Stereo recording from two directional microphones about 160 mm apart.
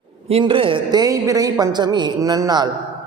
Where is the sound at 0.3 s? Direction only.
35° right (ahead or behind).